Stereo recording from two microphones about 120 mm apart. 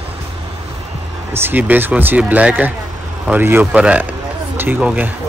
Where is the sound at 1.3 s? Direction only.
15° right (ahead or behind).